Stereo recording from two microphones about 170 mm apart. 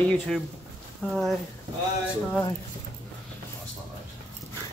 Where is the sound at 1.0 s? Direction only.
Centre (ahead or behind).